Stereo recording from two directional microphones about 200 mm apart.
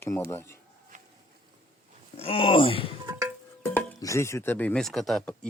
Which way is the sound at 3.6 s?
10° left (ahead or behind).